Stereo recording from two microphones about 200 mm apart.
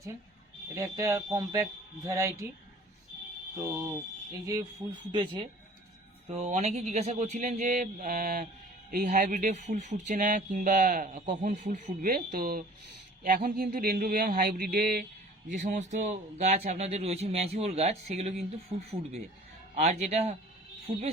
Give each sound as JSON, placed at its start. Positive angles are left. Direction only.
{"t": 0.8, "sound": "speech", "side_deg": -15}
{"t": 3.6, "sound": "speech", "side_deg": -15}
{"t": 6.2, "sound": "speech", "side_deg": -35}
{"t": 20.9, "sound": "speech", "side_deg": -20}